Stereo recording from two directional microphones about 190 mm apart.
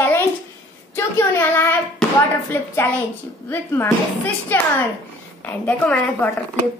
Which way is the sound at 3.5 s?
10° left (ahead or behind).